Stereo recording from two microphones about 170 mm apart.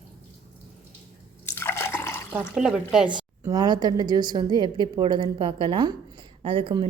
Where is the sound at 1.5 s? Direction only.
15° left (ahead or behind).